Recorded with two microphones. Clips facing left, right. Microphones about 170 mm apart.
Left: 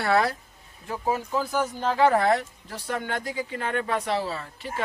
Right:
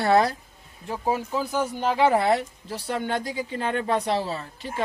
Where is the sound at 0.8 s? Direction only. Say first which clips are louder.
Right 1 dB; 20° right (ahead or behind).